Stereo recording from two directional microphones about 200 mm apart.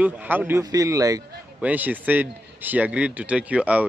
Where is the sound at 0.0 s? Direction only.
10° right (ahead or behind).